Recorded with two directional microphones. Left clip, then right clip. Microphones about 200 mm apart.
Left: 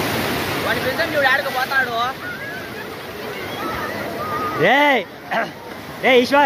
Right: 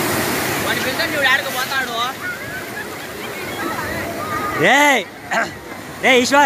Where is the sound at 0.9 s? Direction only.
25° left (ahead or behind).